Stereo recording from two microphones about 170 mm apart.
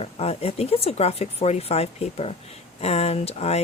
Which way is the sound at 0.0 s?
35° left (ahead or behind).